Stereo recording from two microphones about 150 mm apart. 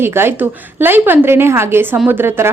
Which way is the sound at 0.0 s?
15° right (ahead or behind).